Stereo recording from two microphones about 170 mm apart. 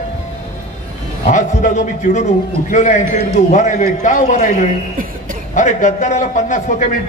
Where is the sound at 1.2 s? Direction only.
45° left (ahead or behind).